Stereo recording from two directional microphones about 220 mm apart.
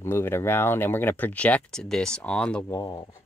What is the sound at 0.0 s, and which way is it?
Speech, 10° left (ahead or behind).